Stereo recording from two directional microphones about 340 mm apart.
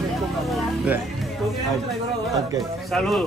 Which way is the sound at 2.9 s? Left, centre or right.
Centre.